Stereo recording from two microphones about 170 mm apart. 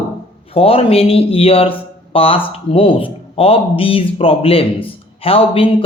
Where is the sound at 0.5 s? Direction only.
35° left (ahead or behind).